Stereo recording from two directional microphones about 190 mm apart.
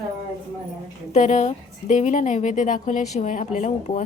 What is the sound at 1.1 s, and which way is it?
A woman's voice, 40° left (ahead or behind).